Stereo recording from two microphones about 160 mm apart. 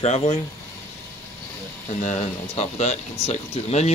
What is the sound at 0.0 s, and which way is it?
Speech, 45° left (ahead or behind).